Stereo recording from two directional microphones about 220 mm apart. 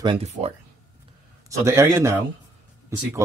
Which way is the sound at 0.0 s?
25° right (ahead or behind).